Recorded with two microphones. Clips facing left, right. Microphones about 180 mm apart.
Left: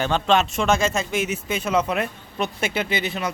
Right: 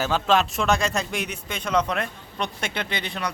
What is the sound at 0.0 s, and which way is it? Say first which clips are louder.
Speech: left 1 dB; centre (ahead or behind).